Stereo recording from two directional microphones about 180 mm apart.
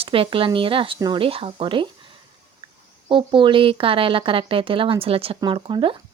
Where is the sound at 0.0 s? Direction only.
30° right (ahead or behind).